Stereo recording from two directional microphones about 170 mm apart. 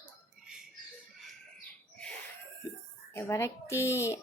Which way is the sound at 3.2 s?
15° left (ahead or behind).